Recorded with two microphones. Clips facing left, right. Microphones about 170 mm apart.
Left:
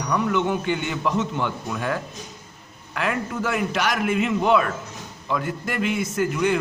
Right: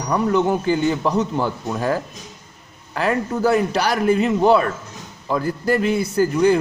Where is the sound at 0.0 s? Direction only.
35° right (ahead or behind).